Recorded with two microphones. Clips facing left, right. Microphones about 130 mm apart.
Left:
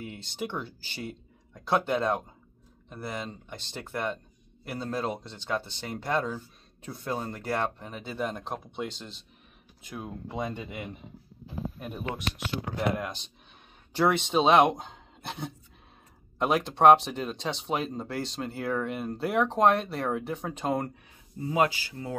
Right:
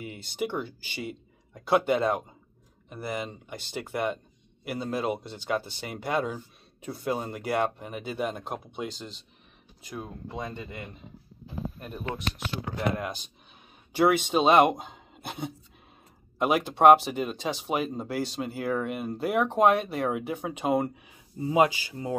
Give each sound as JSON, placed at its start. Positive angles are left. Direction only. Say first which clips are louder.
{"t": 0.0, "sound": "speech", "louder": "right 3 dB", "side_deg": -5}
{"t": 10.2, "sound": "speech", "louder": "left 6 dB", "side_deg": 15}
{"t": 13.9, "sound": "speech", "louder": "right 2 dB", "side_deg": -5}
{"t": 21.4, "sound": "speech", "louder": "right 3 dB", "side_deg": -20}